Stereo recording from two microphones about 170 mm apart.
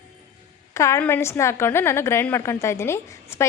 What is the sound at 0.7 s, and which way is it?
A woman's voice, 15° left (ahead or behind).